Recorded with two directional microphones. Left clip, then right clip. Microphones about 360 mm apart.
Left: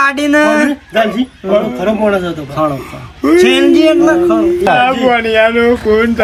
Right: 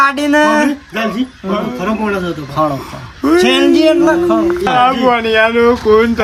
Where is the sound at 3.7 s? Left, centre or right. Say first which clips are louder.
Left 1 dB; centre.